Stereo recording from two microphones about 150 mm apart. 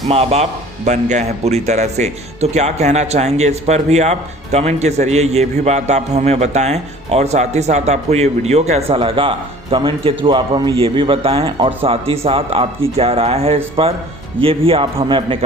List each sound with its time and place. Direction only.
0.1 s speech: 45° right (ahead or behind)